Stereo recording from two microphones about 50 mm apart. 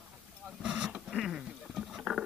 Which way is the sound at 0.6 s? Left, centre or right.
Right.